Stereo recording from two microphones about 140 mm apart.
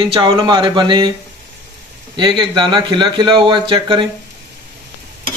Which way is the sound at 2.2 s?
35° right (ahead or behind).